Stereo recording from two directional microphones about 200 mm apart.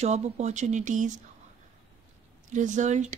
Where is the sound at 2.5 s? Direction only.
40° right (ahead or behind).